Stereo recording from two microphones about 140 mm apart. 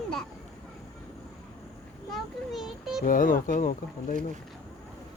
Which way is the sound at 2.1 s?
Centre (ahead or behind).